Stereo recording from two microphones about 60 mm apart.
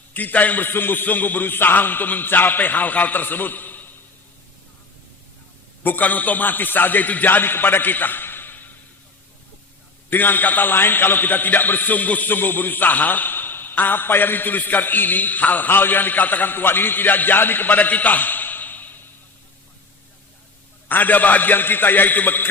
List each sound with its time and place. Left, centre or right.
0.1 s a man's voice: left
5.8 s a man's voice: left
10.1 s a man's voice: left
20.8 s a man's voice: left